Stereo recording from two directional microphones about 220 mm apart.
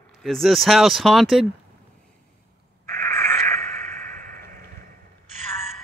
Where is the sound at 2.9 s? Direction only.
5° left (ahead or behind).